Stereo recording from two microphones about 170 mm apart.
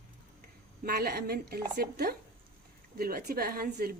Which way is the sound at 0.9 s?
65° right (ahead or behind).